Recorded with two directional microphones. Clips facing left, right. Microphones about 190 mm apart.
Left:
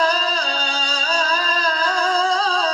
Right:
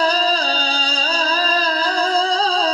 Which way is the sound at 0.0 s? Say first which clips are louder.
Right 2 dB; 35° right (ahead or behind).